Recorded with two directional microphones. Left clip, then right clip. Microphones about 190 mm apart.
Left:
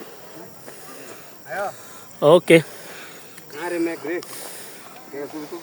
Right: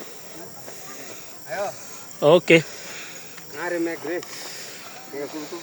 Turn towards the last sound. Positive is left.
turn(degrees=15)  # may be behind; listen again after turning